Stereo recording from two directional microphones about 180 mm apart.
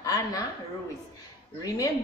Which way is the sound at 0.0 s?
20° left (ahead or behind).